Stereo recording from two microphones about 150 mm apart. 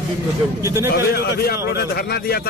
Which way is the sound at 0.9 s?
90° left.